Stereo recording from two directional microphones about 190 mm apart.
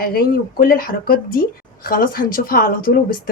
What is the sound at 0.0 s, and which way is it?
Speech, 55° left (ahead or behind).